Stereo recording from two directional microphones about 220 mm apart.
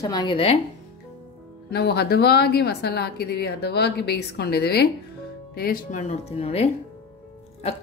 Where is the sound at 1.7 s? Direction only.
45° left (ahead or behind).